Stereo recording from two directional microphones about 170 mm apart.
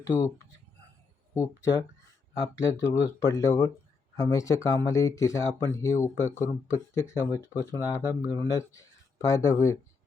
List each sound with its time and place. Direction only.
0.0 s speech: 15° left (ahead or behind)
1.3 s speech: 15° left (ahead or behind)